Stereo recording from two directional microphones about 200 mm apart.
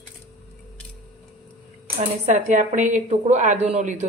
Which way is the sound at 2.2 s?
35° right (ahead or behind).